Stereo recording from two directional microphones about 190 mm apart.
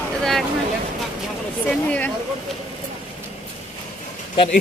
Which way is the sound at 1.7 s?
5° left (ahead or behind).